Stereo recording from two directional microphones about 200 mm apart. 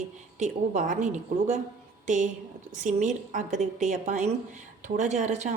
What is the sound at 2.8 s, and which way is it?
A woman's voice, 40° right (ahead or behind).